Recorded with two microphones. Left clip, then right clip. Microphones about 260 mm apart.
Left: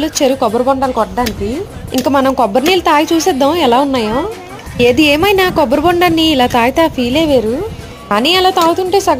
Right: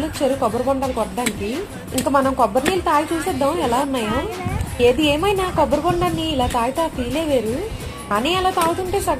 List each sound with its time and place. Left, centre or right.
0.2 s a woman's voice: left
2.0 s a woman's voice: left